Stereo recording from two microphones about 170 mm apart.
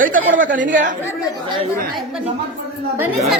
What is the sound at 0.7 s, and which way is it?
Speech, 50° right (ahead or behind).